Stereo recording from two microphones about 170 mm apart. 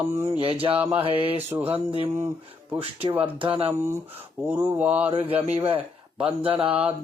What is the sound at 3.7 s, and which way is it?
Speech, 15° right (ahead or behind).